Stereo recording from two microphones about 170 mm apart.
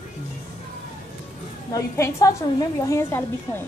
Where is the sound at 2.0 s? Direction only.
20° left (ahead or behind).